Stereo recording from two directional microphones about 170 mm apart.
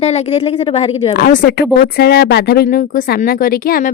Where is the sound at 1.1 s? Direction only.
55° left (ahead or behind).